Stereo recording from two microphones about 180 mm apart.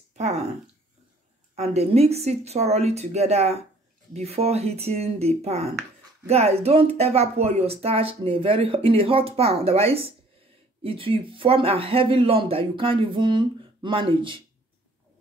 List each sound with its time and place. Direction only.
0.1 s speech: 40° right (ahead or behind)
1.5 s speech: 35° right (ahead or behind)